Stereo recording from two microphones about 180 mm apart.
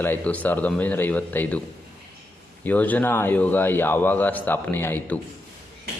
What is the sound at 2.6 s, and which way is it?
A man's voice, 10° left (ahead or behind).